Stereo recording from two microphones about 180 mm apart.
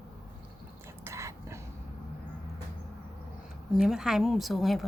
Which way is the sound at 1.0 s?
15° right (ahead or behind).